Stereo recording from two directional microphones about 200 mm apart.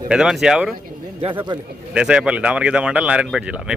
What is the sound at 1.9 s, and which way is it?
Speech, 5° right (ahead or behind).